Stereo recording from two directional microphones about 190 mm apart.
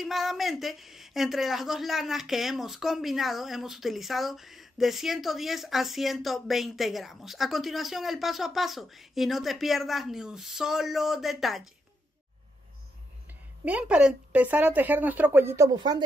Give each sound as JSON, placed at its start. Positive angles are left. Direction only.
{"t": 0.0, "sound": "speech", "side_deg": 0}
{"t": 13.7, "sound": "a woman's voice", "side_deg": -5}